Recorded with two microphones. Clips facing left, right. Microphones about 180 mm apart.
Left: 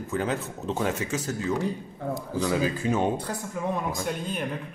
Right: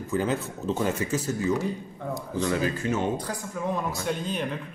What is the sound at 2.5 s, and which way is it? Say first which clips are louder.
Speech: left 1 dB; 10° left (ahead or behind).